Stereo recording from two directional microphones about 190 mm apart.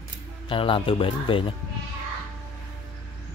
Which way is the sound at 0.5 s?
30° left (ahead or behind).